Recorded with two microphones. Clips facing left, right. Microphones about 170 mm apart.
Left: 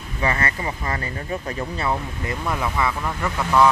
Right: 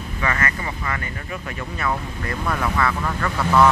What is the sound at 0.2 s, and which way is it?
Speech, 30° left (ahead or behind).